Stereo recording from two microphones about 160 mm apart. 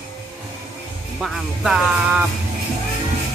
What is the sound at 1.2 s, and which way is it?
Speech, centre (ahead or behind).